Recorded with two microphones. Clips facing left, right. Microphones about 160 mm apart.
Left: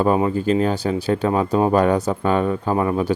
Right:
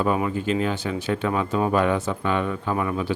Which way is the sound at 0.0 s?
35° left (ahead or behind).